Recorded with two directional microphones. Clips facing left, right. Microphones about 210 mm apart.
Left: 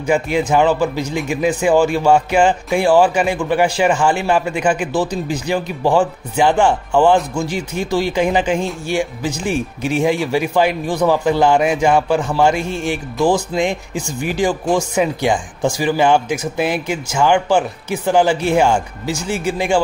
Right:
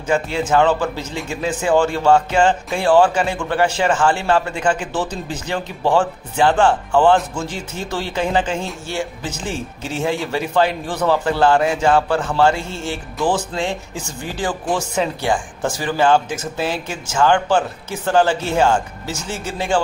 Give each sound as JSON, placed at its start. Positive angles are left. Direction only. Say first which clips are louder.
{"t": 0.0, "sound": "speech", "louder": "left 3 dB", "side_deg": 15}